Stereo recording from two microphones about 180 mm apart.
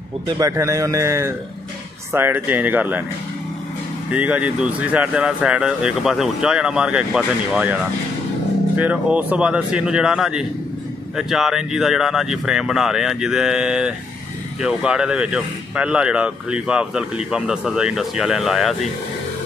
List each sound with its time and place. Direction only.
0.4 s speech: 15° right (ahead or behind)
4.1 s speech: 10° right (ahead or behind)
8.7 s speech: 10° right (ahead or behind)